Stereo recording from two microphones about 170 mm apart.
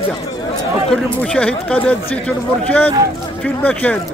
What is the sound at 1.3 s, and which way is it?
A man's voice, 5° left (ahead or behind).